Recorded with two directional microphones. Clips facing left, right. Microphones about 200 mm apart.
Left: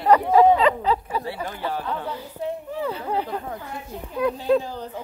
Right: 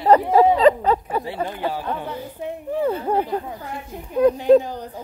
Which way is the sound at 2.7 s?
50° right (ahead or behind).